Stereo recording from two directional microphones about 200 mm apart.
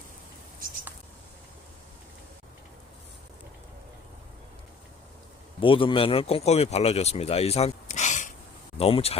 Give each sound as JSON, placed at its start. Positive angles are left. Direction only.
{"t": 5.5, "sound": "a man's voice", "side_deg": 25}